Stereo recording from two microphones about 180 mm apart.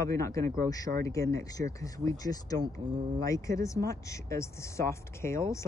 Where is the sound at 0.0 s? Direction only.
15° left (ahead or behind).